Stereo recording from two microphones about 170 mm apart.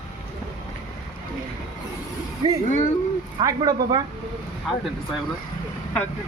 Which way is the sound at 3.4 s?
20° right (ahead or behind).